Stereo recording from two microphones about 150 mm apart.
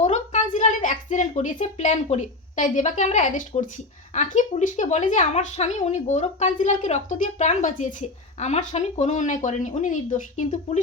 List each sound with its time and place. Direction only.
0.0 s a woman's voice: 50° left (ahead or behind)